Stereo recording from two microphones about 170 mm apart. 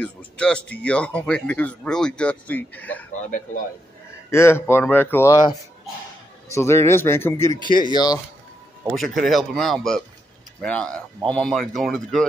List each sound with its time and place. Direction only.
0.0 s a man's voice: 5° left (ahead or behind)
3.3 s speech: 50° left (ahead or behind)
4.3 s a man's voice: 15° left (ahead or behind)
8.9 s a man's voice: centre (ahead or behind)